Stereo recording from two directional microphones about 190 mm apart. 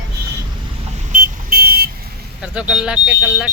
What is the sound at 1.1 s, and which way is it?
Vehicle, 50° right (ahead or behind).